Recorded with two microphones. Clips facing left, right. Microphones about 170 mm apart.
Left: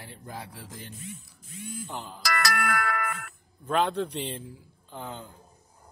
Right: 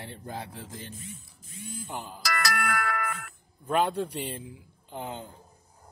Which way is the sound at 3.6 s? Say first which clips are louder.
Even; 10° right (ahead or behind).